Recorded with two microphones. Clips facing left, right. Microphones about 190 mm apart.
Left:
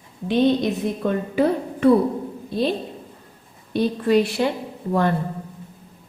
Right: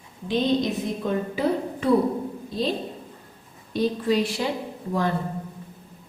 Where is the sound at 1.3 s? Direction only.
60° left (ahead or behind).